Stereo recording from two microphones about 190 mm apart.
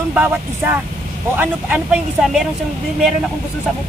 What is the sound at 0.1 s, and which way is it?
Speech, 10° right (ahead or behind).